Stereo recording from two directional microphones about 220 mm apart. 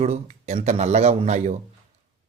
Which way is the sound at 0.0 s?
30° right (ahead or behind).